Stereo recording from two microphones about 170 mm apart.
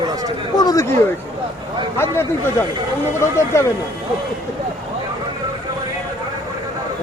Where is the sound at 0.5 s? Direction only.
20° left (ahead or behind).